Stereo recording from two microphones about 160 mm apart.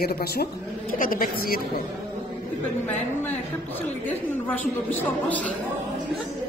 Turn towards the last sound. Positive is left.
turn(degrees=10)  # may be behind; listen again after turning